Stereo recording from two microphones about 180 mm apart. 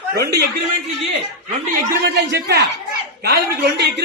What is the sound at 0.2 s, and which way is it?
Speech, 65° right (ahead or behind).